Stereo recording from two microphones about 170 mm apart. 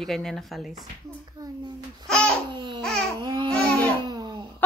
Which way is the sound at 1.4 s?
25° right (ahead or behind).